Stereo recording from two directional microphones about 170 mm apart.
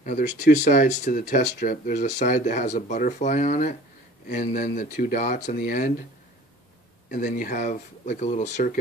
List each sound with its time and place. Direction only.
0.0 s speech: 50° left (ahead or behind)
7.1 s speech: 50° left (ahead or behind)